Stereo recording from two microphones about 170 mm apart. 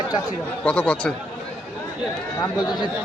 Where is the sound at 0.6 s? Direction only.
5° left (ahead or behind).